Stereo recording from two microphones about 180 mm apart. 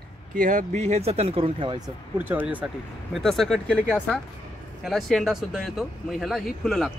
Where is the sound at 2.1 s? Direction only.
10° right (ahead or behind).